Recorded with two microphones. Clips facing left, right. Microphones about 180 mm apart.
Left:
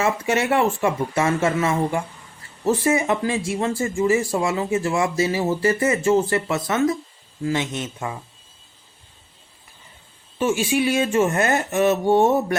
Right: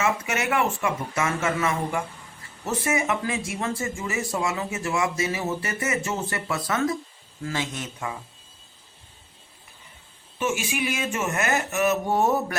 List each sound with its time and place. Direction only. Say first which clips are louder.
0.0 s speech: left 5 dB; 30° left (ahead or behind)
10.3 s speech: left 7 dB; 30° left (ahead or behind)